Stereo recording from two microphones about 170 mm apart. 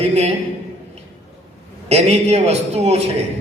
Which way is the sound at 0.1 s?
40° right (ahead or behind).